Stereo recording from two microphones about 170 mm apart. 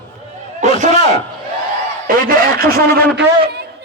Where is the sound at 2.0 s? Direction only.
55° right (ahead or behind).